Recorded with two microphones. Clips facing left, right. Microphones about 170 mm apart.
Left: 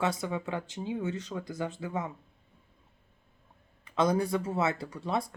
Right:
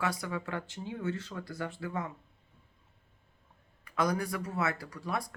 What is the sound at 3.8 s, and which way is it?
Speech, 25° left (ahead or behind).